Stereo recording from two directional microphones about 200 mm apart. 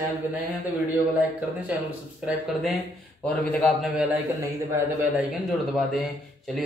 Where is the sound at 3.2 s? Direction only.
5° left (ahead or behind).